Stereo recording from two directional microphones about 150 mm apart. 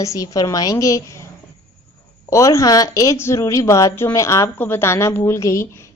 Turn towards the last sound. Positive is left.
turn(degrees=20)  # may be behind; listen again after turning